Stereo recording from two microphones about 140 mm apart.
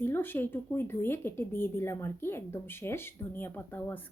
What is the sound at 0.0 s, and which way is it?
Speech, 15° left (ahead or behind).